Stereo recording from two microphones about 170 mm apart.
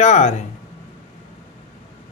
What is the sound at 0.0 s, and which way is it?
Speech, 45° left (ahead or behind).